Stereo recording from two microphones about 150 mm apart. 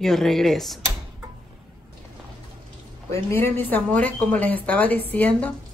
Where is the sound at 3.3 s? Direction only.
15° left (ahead or behind).